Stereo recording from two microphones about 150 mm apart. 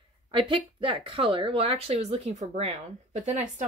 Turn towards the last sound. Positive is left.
turn(degrees=-55)  # may be behind; listen again after turning